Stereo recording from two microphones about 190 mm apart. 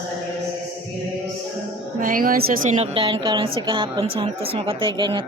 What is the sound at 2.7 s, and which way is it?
A woman's voice, 30° right (ahead or behind).